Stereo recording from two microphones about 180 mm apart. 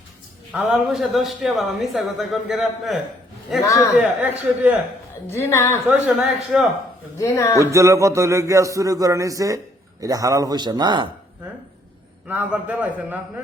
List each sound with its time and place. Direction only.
0.5 s a man's voice: 5° right (ahead or behind)
3.6 s a woman's voice: 15° left (ahead or behind)
3.9 s speech: 10° right (ahead or behind)
5.3 s a woman's voice: 15° left (ahead or behind)
5.9 s a man's voice: 5° right (ahead or behind)
7.2 s a woman's voice: 15° left (ahead or behind)
7.6 s speech: 15° right (ahead or behind)
12.3 s speech: 10° right (ahead or behind)